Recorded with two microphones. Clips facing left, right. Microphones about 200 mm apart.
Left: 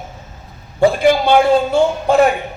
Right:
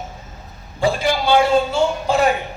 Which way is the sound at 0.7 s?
55° left (ahead or behind).